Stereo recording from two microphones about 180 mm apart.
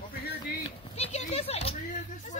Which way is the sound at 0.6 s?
35° left (ahead or behind).